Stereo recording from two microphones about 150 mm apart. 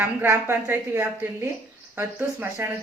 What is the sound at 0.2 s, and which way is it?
Speech, 15° right (ahead or behind).